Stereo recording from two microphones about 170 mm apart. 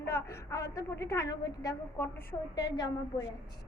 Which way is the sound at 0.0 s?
15° left (ahead or behind).